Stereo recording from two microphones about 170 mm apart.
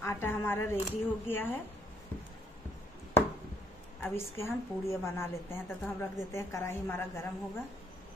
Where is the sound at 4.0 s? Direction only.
15° left (ahead or behind).